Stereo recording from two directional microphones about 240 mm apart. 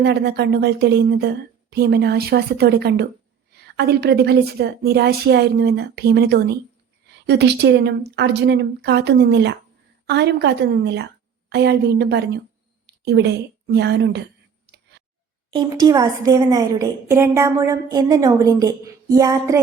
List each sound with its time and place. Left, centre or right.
0.0 s a woman's voice: right
14.7 s a sound: right
15.4 s a woman's voice: centre